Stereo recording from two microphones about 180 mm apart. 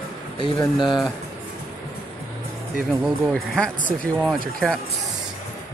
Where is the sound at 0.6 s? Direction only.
25° left (ahead or behind).